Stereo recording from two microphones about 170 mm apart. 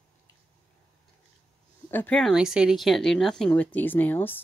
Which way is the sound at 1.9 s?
10° left (ahead or behind).